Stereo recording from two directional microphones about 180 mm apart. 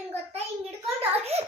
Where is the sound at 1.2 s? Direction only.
35° right (ahead or behind).